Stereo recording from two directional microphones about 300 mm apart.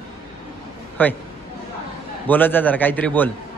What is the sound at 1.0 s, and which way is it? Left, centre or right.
Speech, centre.